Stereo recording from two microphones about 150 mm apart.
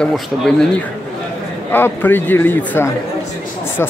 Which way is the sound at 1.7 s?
15° left (ahead or behind).